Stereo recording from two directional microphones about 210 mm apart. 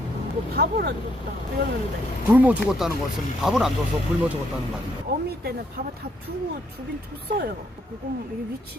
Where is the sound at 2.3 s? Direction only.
5° right (ahead or behind).